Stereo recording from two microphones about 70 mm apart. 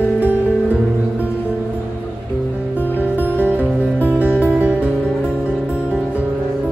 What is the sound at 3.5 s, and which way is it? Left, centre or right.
Music, right.